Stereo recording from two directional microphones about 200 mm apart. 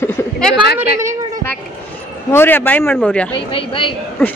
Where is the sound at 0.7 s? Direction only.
15° right (ahead or behind).